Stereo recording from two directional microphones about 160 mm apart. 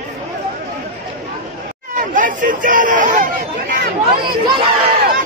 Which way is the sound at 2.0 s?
55° right (ahead or behind).